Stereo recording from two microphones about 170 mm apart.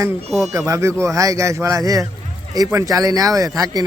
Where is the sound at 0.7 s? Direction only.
15° right (ahead or behind).